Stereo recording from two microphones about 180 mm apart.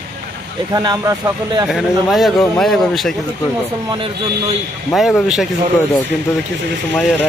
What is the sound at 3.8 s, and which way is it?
Speech, 30° right (ahead or behind).